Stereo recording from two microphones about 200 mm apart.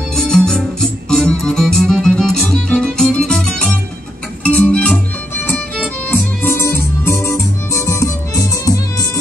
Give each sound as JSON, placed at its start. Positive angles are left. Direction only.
{"t": 0.1, "sound": "music", "side_deg": 5}
{"t": 6.0, "sound": "music", "side_deg": 10}